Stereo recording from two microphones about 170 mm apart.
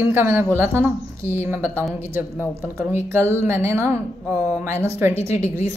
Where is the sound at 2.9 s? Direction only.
15° right (ahead or behind).